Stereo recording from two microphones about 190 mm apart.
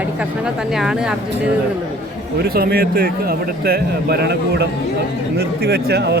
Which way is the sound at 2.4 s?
55° right (ahead or behind).